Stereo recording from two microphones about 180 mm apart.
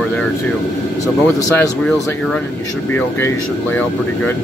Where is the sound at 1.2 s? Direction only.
10° left (ahead or behind).